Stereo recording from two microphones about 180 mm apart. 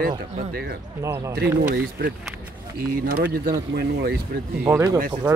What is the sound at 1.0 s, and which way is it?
Speech, 15° right (ahead or behind).